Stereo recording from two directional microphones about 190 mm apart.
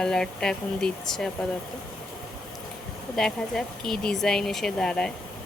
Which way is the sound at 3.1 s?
5° left (ahead or behind).